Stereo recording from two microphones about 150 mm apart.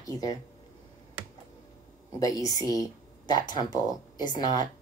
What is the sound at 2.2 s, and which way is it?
Speech, 25° left (ahead or behind).